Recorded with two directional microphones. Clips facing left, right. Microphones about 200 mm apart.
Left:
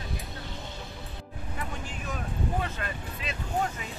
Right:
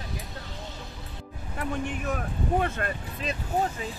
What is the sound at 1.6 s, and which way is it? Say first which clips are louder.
Speech: right 9 dB; 55° right (ahead or behind).